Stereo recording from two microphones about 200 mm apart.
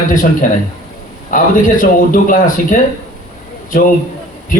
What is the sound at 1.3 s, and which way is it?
A man's voice, 40° left (ahead or behind).